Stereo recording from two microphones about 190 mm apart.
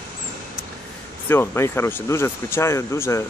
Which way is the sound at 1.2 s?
10° left (ahead or behind).